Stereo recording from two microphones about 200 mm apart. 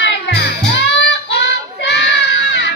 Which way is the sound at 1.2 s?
60° left (ahead or behind).